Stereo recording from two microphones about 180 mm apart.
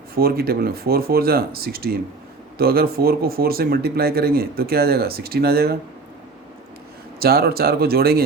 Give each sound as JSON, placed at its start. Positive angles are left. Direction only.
{"t": 0.1, "sound": "speech", "side_deg": -55}
{"t": 7.2, "sound": "speech", "side_deg": -60}